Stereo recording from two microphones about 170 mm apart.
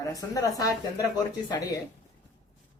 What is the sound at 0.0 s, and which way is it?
Speech, 20° left (ahead or behind).